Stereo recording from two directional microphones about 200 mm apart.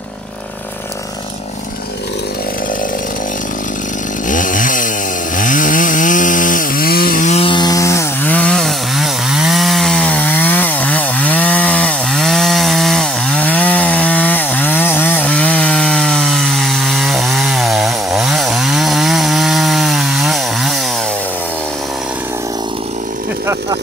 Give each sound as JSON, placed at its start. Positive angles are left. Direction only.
{"t": 4.3, "sound": "chainsaw", "side_deg": 40}